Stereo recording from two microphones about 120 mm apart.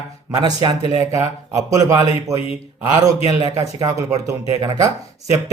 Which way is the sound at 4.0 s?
30° right (ahead or behind).